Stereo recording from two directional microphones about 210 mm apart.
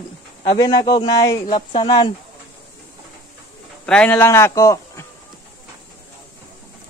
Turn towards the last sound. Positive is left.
turn(degrees=15)  # may be behind; listen again after turning